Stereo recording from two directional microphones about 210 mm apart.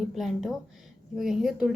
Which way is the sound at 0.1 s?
Centre (ahead or behind).